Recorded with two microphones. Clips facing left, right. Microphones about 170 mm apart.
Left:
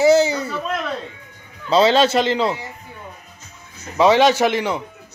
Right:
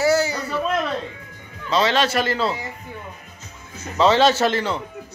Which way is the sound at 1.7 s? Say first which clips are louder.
Left 5 dB; 30° left (ahead or behind).